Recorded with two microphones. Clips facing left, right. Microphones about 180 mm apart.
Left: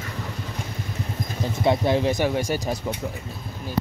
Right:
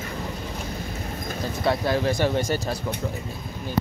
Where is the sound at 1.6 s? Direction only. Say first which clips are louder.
Left 3 dB; 20° left (ahead or behind).